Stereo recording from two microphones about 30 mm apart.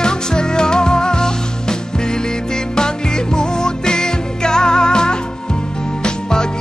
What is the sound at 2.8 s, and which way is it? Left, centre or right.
Music, left.